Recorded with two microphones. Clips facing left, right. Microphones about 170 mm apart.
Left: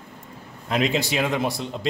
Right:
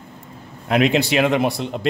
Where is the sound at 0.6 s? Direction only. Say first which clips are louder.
Right 6 dB; 65° right (ahead or behind).